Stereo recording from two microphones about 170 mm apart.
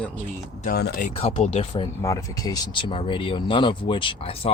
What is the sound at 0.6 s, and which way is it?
Speech, 65° left (ahead or behind).